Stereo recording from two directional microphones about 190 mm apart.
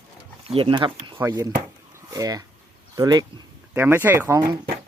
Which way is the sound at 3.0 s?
20° right (ahead or behind).